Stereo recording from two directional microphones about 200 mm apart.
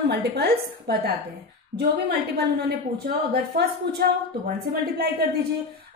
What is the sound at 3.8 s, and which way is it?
A woman's voice, 55° right (ahead or behind).